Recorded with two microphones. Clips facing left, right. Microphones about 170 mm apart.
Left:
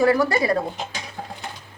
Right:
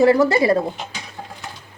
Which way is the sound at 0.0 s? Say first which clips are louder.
Right 4 dB; 25° right (ahead or behind).